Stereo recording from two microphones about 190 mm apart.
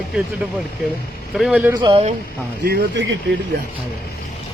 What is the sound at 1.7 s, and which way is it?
Speech, 25° right (ahead or behind).